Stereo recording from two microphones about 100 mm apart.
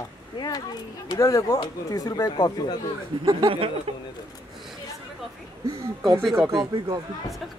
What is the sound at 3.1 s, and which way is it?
Speech, 65° right (ahead or behind).